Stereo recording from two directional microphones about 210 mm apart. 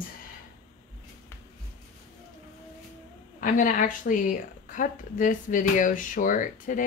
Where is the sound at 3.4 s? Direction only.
40° left (ahead or behind).